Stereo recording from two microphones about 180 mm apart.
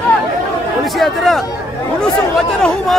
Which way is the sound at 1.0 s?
Centre (ahead or behind).